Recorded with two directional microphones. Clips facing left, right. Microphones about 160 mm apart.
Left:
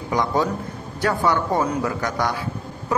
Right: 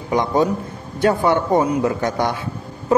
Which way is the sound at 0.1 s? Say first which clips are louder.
Right 4 dB; 20° right (ahead or behind).